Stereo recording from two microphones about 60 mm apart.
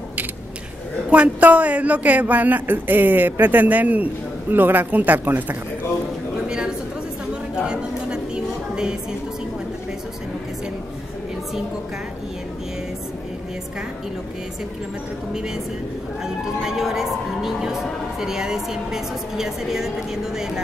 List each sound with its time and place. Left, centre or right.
1.1 s speech: right
7.6 s a sound: centre
15.3 s a woman's voice: centre